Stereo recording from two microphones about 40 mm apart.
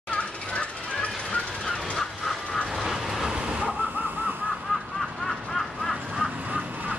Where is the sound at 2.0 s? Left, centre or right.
Centre.